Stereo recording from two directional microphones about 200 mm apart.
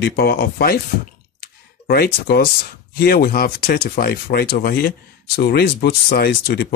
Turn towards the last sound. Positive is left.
turn(degrees=50)  # may be behind; listen again after turning